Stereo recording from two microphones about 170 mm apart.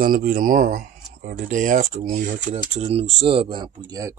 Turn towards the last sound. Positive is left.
turn(degrees=-25)  # may be behind; listen again after turning